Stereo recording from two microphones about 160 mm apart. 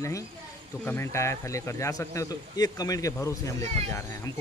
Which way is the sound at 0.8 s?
15° left (ahead or behind).